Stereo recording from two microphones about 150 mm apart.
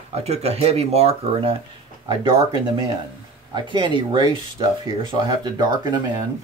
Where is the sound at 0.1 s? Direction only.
45° right (ahead or behind).